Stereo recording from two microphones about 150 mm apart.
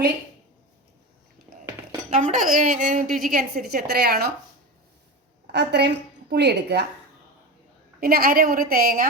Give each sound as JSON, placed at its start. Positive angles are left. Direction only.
{"t": 2.0, "sound": "a woman's voice", "side_deg": -55}
{"t": 5.5, "sound": "a woman's voice", "side_deg": -90}
{"t": 8.0, "sound": "a woman's voice", "side_deg": -80}